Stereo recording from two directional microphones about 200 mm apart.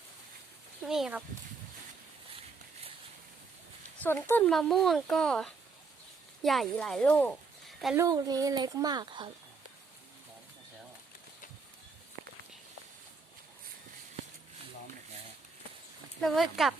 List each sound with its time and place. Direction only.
0.8 s speech: 5° right (ahead or behind)
4.0 s speech: 10° left (ahead or behind)
7.9 s speech: 15° right (ahead or behind)
16.2 s speech: centre (ahead or behind)